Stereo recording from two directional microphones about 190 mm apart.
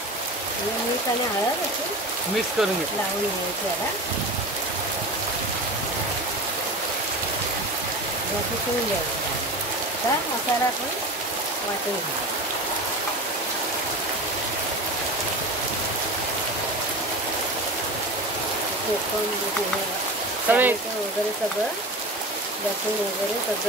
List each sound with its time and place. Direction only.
20.5 s speech: 10° right (ahead or behind)